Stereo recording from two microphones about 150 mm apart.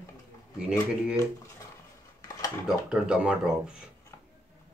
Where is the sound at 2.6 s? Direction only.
5° right (ahead or behind).